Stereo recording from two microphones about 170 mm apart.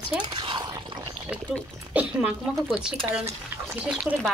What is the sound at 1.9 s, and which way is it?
A woman's voice, 10° right (ahead or behind).